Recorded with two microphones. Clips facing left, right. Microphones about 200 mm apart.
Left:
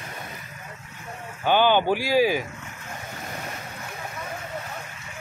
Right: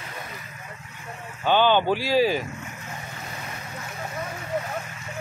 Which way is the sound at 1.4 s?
10° left (ahead or behind).